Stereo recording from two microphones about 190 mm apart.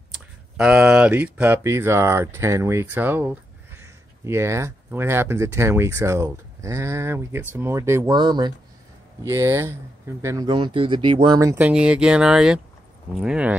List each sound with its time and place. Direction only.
0.6 s speech: 5° right (ahead or behind); by 11.5 s 20° right (ahead or behind)
11.5 s speech: 5° right (ahead or behind)